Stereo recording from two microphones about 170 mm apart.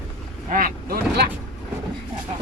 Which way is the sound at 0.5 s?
55° right (ahead or behind).